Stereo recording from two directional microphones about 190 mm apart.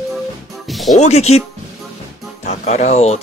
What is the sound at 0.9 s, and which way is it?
Speech, 35° left (ahead or behind).